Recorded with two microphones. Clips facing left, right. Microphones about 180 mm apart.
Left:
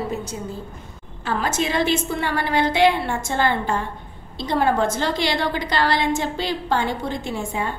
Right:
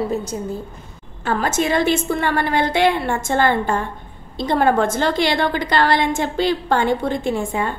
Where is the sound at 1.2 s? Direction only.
50° right (ahead or behind).